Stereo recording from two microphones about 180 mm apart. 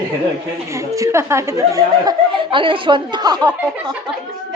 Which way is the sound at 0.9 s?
15° right (ahead or behind).